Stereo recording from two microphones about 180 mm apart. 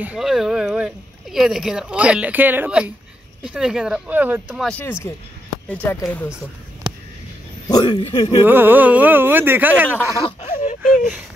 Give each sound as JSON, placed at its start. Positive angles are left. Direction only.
{"t": 0.0, "sound": "speech", "side_deg": -5}
{"t": 4.6, "sound": "speech", "side_deg": 10}
{"t": 7.6, "sound": "speech", "side_deg": 25}
{"t": 8.4, "sound": "speech", "side_deg": -10}
{"t": 10.2, "sound": "a sound", "side_deg": 40}